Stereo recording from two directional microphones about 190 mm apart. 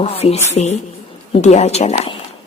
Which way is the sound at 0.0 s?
30° left (ahead or behind).